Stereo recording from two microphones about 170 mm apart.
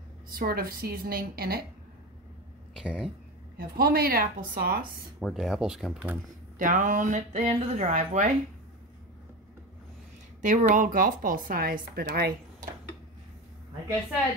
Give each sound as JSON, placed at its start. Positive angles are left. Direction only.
{"t": 0.4, "sound": "a woman's voice", "side_deg": -60}
{"t": 2.7, "sound": "speech", "side_deg": 0}
{"t": 3.5, "sound": "a woman's voice", "side_deg": -60}
{"t": 5.2, "sound": "speech", "side_deg": 0}
{"t": 6.6, "sound": "speech", "side_deg": -50}
{"t": 10.4, "sound": "speech", "side_deg": -50}